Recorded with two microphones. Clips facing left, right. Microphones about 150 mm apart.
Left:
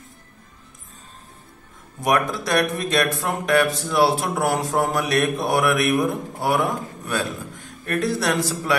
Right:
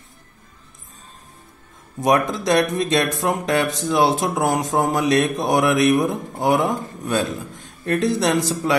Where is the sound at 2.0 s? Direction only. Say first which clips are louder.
Right 3 dB; 20° right (ahead or behind).